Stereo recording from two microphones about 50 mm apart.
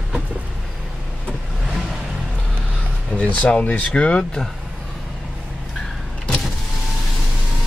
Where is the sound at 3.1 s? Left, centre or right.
Left.